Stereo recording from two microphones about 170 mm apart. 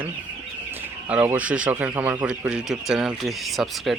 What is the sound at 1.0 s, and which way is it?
Speech, 10° right (ahead or behind).